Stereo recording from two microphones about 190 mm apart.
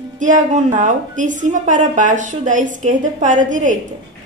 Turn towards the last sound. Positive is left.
turn(degrees=-40)  # may be behind; listen again after turning